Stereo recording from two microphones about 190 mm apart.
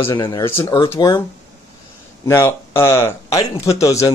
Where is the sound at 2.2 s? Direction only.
15° left (ahead or behind).